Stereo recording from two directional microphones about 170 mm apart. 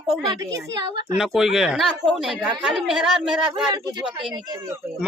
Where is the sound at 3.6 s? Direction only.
25° right (ahead or behind).